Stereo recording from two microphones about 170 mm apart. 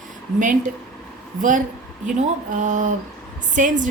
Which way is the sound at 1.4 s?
50° right (ahead or behind).